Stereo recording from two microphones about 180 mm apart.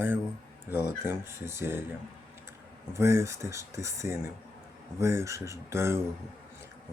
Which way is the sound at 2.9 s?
15° right (ahead or behind).